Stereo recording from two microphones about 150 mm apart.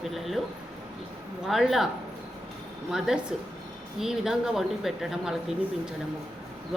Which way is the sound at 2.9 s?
5° right (ahead or behind).